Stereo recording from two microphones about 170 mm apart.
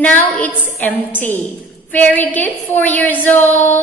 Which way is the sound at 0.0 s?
10° left (ahead or behind).